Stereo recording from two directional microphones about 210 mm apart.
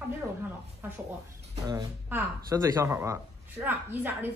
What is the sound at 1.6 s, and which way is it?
Speech, 15° right (ahead or behind).